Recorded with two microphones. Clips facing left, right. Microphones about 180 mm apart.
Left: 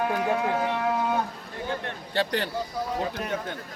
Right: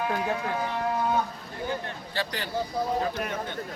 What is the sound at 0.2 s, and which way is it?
Speech, 65° left (ahead or behind).